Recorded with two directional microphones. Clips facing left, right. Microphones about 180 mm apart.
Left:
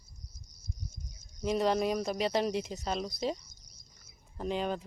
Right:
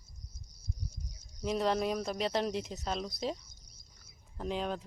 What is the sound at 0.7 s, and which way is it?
Cricket, 35° right (ahead or behind).